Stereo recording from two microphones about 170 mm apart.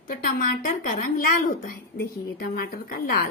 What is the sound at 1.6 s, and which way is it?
A woman's voice, 60° left (ahead or behind).